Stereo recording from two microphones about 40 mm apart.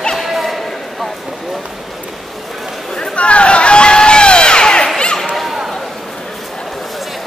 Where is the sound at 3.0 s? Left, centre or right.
Left.